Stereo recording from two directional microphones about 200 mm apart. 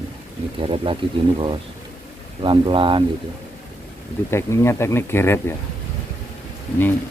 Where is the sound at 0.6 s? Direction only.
30° right (ahead or behind).